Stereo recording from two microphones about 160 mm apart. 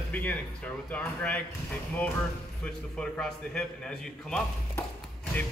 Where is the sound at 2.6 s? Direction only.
5° left (ahead or behind).